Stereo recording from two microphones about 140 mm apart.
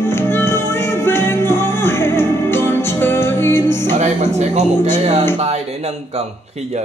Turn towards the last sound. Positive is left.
turn(degrees=-50)  # may be behind; listen again after turning